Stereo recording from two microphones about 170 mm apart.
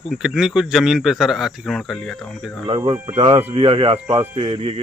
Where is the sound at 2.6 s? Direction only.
30° right (ahead or behind).